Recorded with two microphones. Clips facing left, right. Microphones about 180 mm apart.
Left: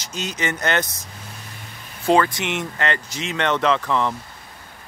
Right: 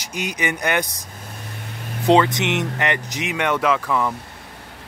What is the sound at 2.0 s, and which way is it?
Speech, 20° right (ahead or behind).